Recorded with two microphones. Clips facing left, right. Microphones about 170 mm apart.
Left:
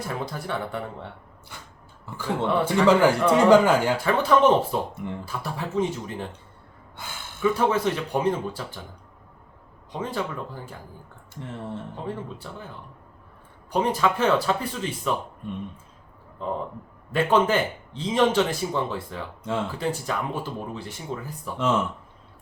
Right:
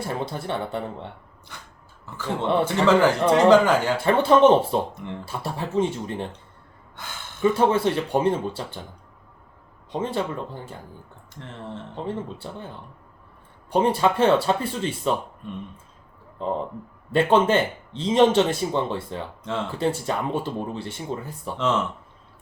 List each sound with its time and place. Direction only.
0.0 s speech: 25° right (ahead or behind)
2.0 s speech: 10° left (ahead or behind)
2.4 s speech: 25° right (ahead or behind)
2.8 s speech: 10° left (ahead or behind)
4.0 s speech: 25° right (ahead or behind)
7.5 s speech: 30° right (ahead or behind)
9.9 s speech: 25° right (ahead or behind)
11.3 s speech: 10° left (ahead or behind)
12.0 s speech: 25° right (ahead or behind)
13.7 s speech: 30° right (ahead or behind)
17.1 s speech: 25° right (ahead or behind)
21.6 s speech: 10° left (ahead or behind)